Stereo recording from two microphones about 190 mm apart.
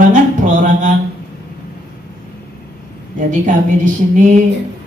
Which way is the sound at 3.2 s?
40° right (ahead or behind).